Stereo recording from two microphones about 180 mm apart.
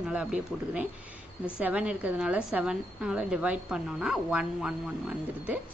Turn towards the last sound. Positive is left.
turn(degrees=-5)  # may be behind; listen again after turning